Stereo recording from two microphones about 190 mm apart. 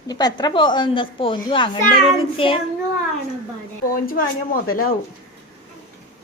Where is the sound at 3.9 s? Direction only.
50° left (ahead or behind).